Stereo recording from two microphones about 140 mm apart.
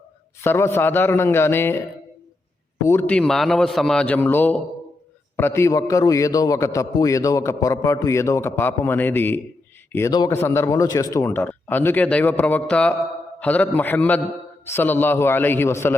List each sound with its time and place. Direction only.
0.4 s a man's voice: 20° left (ahead or behind)
2.8 s a man's voice: 15° left (ahead or behind)
10.1 s a man's voice: 25° left (ahead or behind)